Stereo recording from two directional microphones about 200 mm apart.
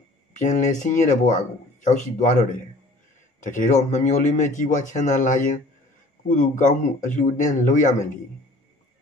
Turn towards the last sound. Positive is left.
turn(degrees=40)  # may be behind; listen again after turning